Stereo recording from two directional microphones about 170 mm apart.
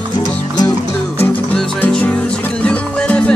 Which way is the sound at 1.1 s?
10° left (ahead or behind).